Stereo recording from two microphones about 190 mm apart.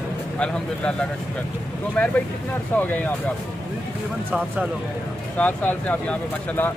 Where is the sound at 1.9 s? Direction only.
10° left (ahead or behind).